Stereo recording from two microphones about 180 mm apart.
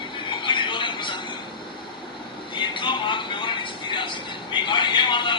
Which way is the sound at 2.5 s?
25° left (ahead or behind).